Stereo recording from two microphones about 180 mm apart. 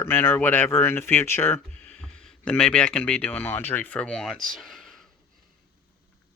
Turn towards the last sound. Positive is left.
turn(degrees=0)  # may be behind; listen again after turning